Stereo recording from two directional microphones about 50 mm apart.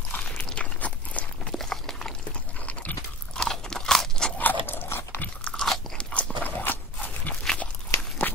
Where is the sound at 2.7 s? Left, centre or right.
Left.